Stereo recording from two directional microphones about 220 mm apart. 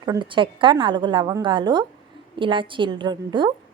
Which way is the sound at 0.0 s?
20° right (ahead or behind).